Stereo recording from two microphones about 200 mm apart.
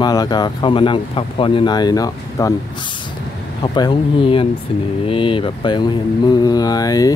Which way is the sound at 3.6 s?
25° left (ahead or behind).